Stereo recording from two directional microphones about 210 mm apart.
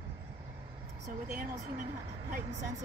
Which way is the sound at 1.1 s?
35° right (ahead or behind).